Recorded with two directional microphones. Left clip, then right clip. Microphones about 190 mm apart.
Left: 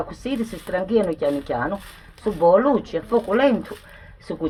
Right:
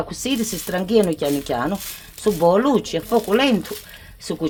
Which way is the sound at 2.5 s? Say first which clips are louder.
Left 2 dB; 60° right (ahead or behind).